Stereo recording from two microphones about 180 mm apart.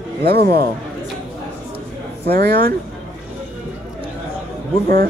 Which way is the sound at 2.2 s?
55° right (ahead or behind).